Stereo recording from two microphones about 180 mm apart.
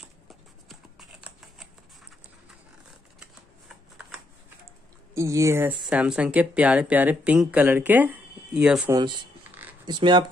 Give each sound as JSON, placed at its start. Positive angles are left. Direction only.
{"t": 0.3, "sound": "a sound", "side_deg": 0}
{"t": 3.2, "sound": "shuffling cards", "side_deg": -10}
{"t": 5.1, "sound": "speech", "side_deg": -15}
{"t": 8.9, "sound": "speech", "side_deg": -25}
{"t": 9.5, "sound": "a sound", "side_deg": -10}
{"t": 9.8, "sound": "speech", "side_deg": -25}